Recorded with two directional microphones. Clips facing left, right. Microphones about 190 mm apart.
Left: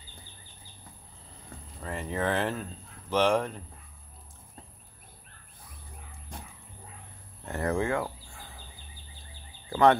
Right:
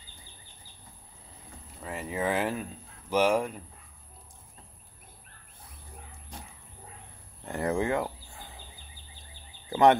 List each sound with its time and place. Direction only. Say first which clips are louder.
1.8 s speech: left 1 dB; 5° right (ahead or behind)
7.4 s fowl: even; 15° right (ahead or behind)
9.7 s speech: right 1 dB; 20° right (ahead or behind)